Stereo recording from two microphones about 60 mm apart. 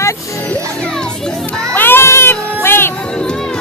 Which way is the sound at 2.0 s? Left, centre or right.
Left.